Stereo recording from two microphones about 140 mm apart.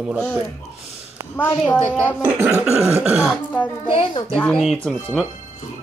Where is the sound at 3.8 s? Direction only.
40° left (ahead or behind).